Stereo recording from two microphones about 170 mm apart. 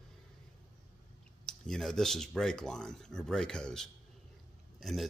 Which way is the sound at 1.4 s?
Centre (ahead or behind).